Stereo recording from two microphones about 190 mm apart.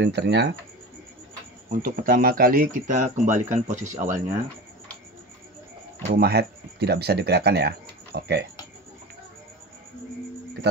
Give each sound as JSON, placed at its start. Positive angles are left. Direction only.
{"t": 0.0, "sound": "speech", "side_deg": -65}
{"t": 1.7, "sound": "speech", "side_deg": -50}
{"t": 6.1, "sound": "speech", "side_deg": -60}